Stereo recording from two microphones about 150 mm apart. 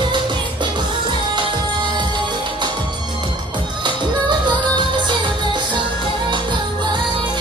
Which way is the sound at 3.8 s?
30° right (ahead or behind).